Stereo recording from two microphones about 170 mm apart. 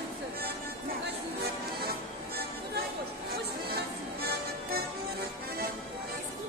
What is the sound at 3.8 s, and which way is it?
Music, 65° right (ahead or behind).